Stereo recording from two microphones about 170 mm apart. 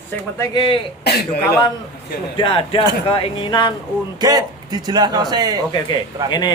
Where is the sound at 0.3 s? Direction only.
25° left (ahead or behind).